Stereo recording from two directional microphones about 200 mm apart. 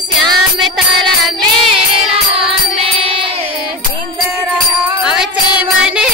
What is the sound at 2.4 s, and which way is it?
Music, 25° right (ahead or behind).